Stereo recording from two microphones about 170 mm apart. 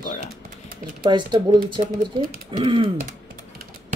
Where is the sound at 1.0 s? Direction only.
25° right (ahead or behind).